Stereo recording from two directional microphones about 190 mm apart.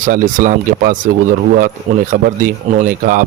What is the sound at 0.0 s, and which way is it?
Speech, 45° right (ahead or behind).